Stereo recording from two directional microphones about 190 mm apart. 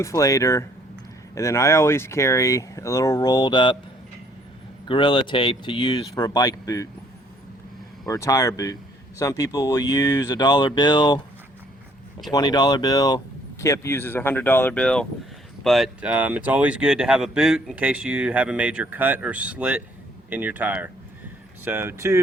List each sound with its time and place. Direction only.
0.0 s speech: 15° left (ahead or behind)
4.9 s speech: 25° left (ahead or behind)
8.0 s speech: 20° left (ahead or behind)
12.3 s speech: 20° left (ahead or behind); by 22.2 s 15° right (ahead or behind)